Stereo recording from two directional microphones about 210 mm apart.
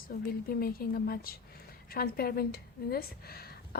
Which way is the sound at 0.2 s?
45° left (ahead or behind).